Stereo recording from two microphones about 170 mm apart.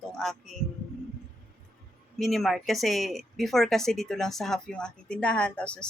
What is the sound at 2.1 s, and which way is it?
Speech, centre (ahead or behind).